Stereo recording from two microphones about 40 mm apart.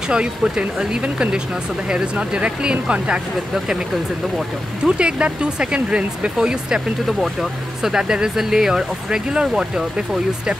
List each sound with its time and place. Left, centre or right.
0.1 s speech: right
3.5 s speech: centre
4.8 s speech: right
7.8 s speech: centre